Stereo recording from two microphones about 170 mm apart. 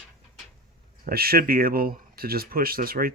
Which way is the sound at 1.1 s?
60° right (ahead or behind).